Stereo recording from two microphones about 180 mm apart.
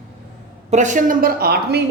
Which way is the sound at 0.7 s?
45° right (ahead or behind).